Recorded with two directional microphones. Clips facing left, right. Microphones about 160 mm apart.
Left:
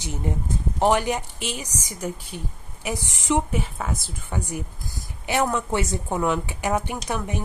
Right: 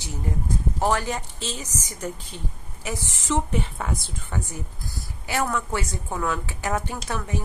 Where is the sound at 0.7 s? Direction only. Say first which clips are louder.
Left 5 dB; 20° left (ahead or behind); by 4.1 s centre (ahead or behind).